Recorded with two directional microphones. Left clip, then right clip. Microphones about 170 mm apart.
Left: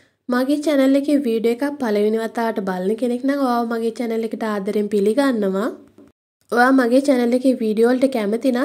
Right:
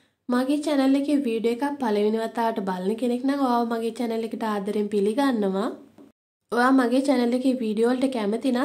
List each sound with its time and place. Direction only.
0.3 s speech: 20° left (ahead or behind)